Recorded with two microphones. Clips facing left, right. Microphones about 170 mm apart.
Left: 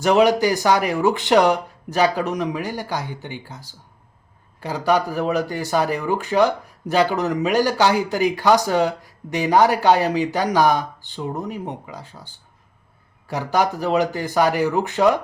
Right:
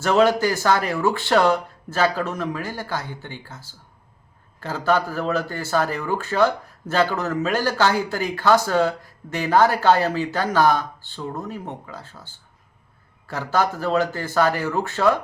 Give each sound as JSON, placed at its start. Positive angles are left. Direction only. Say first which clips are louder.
{"t": 0.0, "sound": "speech", "louder": "left 2 dB", "side_deg": 15}